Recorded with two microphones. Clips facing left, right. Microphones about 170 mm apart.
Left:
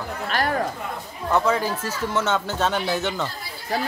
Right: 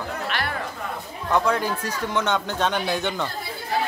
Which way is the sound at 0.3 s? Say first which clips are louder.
Left 9 dB; 40° left (ahead or behind).